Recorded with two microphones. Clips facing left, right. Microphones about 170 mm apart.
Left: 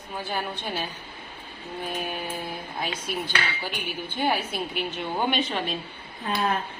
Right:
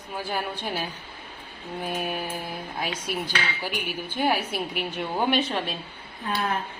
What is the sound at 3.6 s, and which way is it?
A woman's voice, 10° right (ahead or behind).